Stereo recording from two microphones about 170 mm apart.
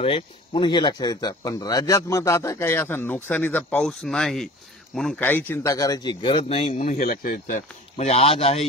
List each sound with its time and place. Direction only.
0.0 s speech: 30° left (ahead or behind); by 5.1 s centre (ahead or behind)
5.5 s speech: 15° left (ahead or behind); by 8.6 s 35° left (ahead or behind)